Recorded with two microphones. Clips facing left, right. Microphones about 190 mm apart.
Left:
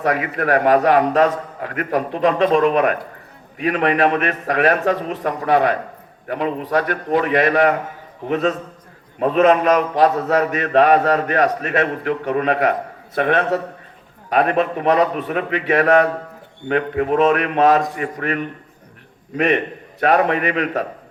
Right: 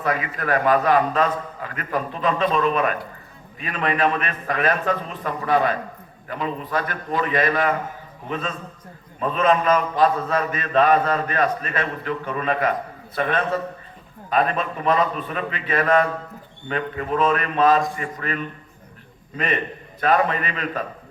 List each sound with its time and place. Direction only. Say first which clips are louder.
0.0 s a man's voice: left 5 dB; 65° left (ahead or behind)